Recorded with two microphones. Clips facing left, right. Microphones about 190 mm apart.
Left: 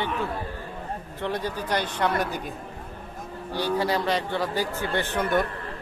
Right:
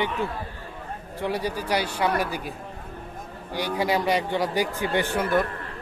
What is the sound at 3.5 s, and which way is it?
A man's voice, 15° right (ahead or behind).